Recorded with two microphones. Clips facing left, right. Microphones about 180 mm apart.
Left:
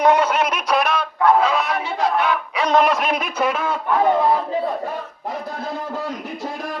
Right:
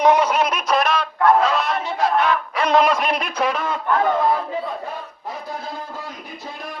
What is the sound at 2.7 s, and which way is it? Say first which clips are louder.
A man's voice: even; centre (ahead or behind).